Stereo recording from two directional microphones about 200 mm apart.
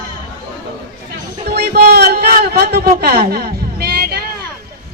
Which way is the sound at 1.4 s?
50° right (ahead or behind).